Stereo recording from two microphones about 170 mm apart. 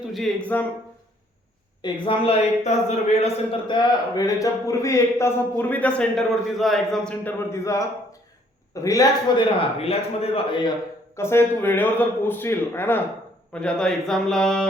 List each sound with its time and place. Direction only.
0.0 s speech: centre (ahead or behind)
1.8 s a man's voice: 35° left (ahead or behind); by 7.3 s 5° left (ahead or behind)
7.5 s a man's voice: 20° left (ahead or behind)
9.6 s speech: 35° left (ahead or behind)
11.2 s a man's voice: 15° left (ahead or behind)